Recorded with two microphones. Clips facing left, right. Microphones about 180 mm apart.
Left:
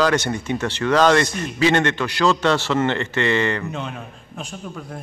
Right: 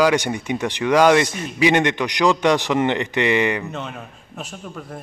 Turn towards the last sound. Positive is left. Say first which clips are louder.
# left 1 dB
turn(degrees=-5)  # may be behind; listen again after turning